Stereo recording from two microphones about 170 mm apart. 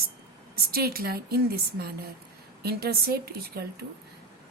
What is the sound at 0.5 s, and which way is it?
A woman's voice, 65° right (ahead or behind).